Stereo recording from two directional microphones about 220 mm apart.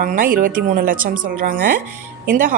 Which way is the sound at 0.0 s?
40° right (ahead or behind).